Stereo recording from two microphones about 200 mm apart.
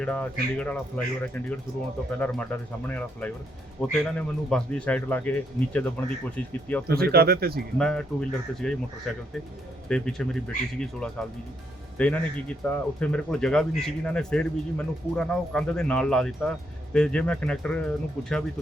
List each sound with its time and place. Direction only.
0.0 s speech: 5° left (ahead or behind)
2.1 s speech: 10° left (ahead or behind)
6.8 s speech: 50° right (ahead or behind)
7.8 s speech: 5° left (ahead or behind)